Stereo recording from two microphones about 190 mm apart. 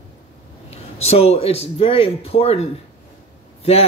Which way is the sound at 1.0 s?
35° left (ahead or behind).